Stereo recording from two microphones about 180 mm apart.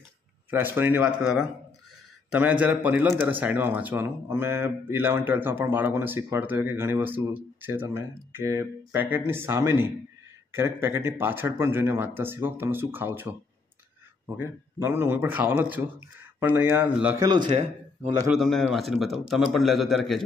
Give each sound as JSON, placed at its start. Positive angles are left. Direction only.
{"t": 0.5, "sound": "a man's voice", "side_deg": -10}
{"t": 17.2, "sound": "speech", "side_deg": -25}
{"t": 18.3, "sound": "a man's voice", "side_deg": 0}